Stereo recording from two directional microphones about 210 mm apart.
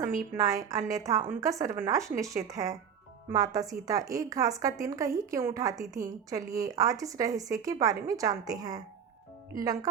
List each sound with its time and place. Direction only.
0.0 s a woman's voice: 40° right (ahead or behind)
0.3 s a woman's voice: 15° right (ahead or behind)